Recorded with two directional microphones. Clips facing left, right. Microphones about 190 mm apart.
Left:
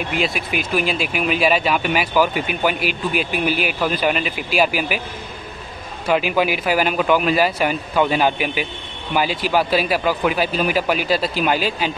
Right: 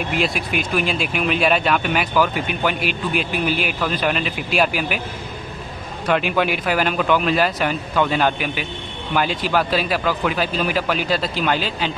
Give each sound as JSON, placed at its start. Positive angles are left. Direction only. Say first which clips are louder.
{"t": 0.2, "sound": "speech", "louder": "even", "side_deg": 0}
{"t": 6.0, "sound": "a man's voice", "louder": "left 1 dB", "side_deg": 5}